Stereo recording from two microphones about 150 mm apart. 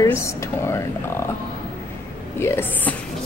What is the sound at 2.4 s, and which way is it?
Speech, 15° left (ahead or behind).